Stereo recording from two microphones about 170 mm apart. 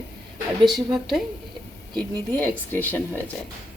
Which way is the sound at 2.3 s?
10° left (ahead or behind).